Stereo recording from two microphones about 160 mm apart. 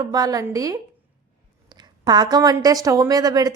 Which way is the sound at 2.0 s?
25° right (ahead or behind).